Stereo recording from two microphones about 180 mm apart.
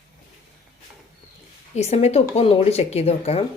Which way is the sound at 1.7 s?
35° left (ahead or behind).